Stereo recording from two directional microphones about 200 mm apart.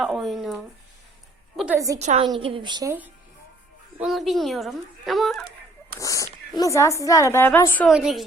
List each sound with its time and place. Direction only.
0.0 s a woman's voice: centre (ahead or behind)
2.0 s a woman's voice: 30° right (ahead or behind)
4.0 s a woman's voice: centre (ahead or behind)
6.0 s a sound: 15° left (ahead or behind)
6.6 s a woman's voice: 15° left (ahead or behind)
7.9 s a woman's voice: centre (ahead or behind)